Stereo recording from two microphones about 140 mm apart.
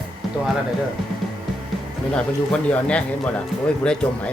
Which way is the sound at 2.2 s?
5° left (ahead or behind).